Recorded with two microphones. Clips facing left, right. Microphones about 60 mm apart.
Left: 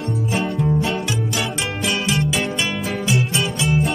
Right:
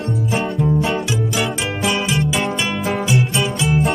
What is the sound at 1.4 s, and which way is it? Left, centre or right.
Music, centre.